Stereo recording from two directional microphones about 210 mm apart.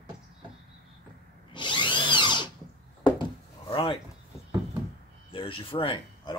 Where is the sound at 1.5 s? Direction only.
20° left (ahead or behind).